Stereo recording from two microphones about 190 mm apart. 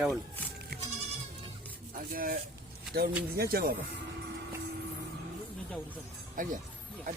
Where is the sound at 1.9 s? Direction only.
50° right (ahead or behind).